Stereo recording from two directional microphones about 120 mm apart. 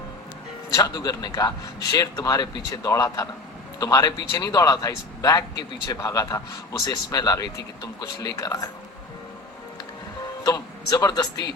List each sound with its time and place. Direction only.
0.8 s speech: 30° left (ahead or behind)
10.4 s speech: 30° left (ahead or behind)